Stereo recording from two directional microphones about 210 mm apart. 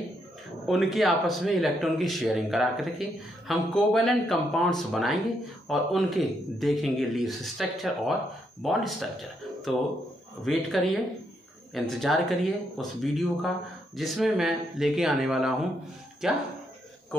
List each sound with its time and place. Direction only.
0.7 s speech: centre (ahead or behind)